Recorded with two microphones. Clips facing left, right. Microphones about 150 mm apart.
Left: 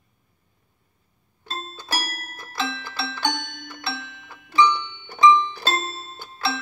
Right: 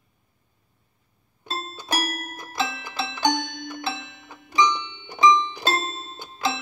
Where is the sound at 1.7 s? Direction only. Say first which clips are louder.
Right 4 dB; 15° right (ahead or behind).